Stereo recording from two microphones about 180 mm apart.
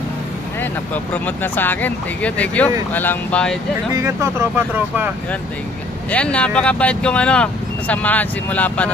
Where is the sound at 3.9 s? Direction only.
15° right (ahead or behind).